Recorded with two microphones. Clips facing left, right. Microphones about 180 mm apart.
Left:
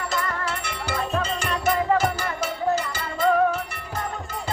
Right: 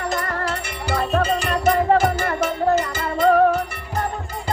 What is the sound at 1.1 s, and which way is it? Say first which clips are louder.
Music: right 6 dB; 50° right (ahead or behind).